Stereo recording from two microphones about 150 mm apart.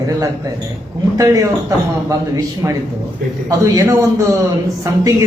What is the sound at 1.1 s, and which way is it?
A man's voice, 20° right (ahead or behind).